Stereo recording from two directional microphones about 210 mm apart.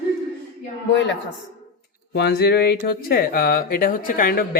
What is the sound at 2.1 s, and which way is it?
Speech, 50° left (ahead or behind).